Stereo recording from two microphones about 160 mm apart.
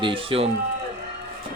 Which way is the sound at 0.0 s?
35° right (ahead or behind).